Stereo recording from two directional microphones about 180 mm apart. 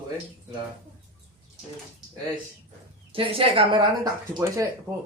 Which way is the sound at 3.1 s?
30° right (ahead or behind).